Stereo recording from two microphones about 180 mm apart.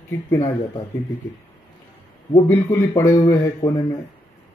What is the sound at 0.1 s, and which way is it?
Speech, 15° left (ahead or behind).